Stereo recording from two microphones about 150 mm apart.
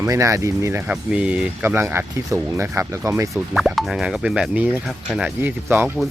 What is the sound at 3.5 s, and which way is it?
Speech, centre (ahead or behind).